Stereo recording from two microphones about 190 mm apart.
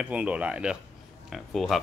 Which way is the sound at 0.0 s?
5° right (ahead or behind).